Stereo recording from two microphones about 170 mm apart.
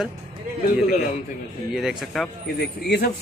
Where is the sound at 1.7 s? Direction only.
Centre (ahead or behind).